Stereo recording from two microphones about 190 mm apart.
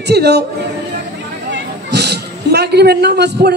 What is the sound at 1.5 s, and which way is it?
A woman's voice, 60° right (ahead or behind).